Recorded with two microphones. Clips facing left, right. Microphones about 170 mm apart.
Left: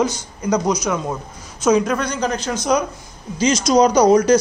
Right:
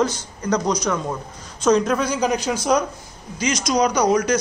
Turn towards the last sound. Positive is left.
turn(degrees=30)  # may be behind; listen again after turning